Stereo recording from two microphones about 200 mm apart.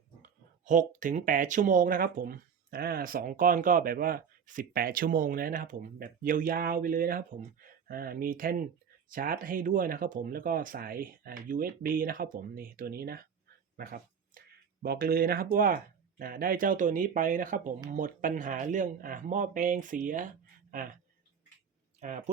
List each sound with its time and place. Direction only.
0.2 s speech: 40° right (ahead or behind)